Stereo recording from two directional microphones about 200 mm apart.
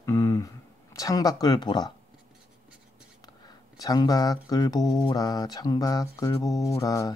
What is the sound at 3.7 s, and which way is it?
Mantra, 20° left (ahead or behind).